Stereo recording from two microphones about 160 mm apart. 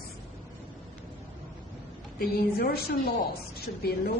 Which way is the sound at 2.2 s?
70° left (ahead or behind).